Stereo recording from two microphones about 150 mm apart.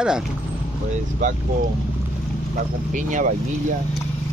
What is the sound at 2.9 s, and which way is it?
Speech, 60° right (ahead or behind).